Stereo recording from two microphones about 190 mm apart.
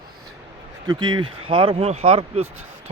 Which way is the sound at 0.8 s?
25° right (ahead or behind).